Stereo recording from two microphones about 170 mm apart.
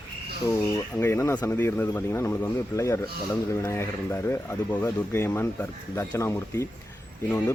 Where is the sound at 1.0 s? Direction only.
15° left (ahead or behind).